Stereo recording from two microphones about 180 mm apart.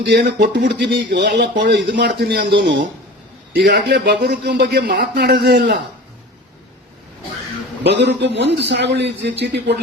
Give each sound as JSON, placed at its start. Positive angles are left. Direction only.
{"t": 0.3, "sound": "speech", "side_deg": -70}
{"t": 7.9, "sound": "speech", "side_deg": -75}